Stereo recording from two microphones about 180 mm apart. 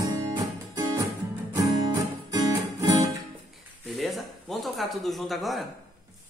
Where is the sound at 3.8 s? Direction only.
Centre (ahead or behind).